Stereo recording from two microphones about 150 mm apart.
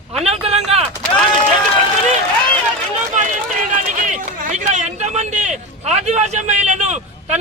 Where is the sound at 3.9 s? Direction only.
55° right (ahead or behind).